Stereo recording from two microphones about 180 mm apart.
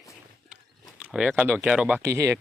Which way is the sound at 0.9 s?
5° right (ahead or behind).